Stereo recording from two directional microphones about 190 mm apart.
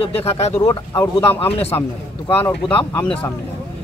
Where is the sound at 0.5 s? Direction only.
15° left (ahead or behind).